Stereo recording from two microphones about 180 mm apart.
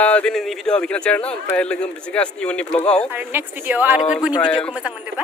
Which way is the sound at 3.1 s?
10° right (ahead or behind).